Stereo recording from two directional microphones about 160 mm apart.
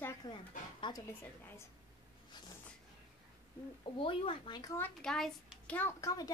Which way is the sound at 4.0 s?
35° left (ahead or behind).